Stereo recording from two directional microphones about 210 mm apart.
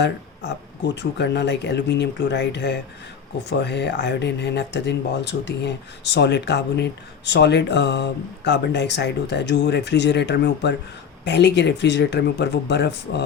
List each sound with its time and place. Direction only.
0.9 s speech: 55° left (ahead or behind)